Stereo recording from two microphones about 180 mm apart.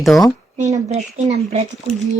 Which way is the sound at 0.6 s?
35° right (ahead or behind).